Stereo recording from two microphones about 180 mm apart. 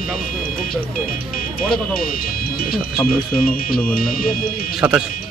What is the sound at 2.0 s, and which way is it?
Speech, 55° left (ahead or behind).